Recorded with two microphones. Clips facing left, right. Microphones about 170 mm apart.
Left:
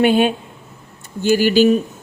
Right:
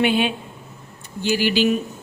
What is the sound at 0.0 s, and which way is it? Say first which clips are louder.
A woman's voice: left 5 dB; 45° left (ahead or behind).